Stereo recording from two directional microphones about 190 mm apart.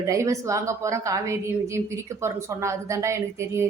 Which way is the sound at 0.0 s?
15° right (ahead or behind).